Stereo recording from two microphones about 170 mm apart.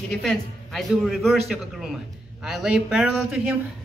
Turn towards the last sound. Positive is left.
turn(degrees=0)  # may be behind; listen again after turning